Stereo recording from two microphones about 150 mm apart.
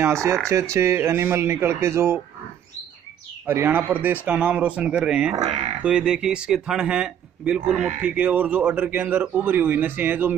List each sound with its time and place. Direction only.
0.0 s speech: 20° right (ahead or behind)
3.4 s speech: 15° right (ahead or behind)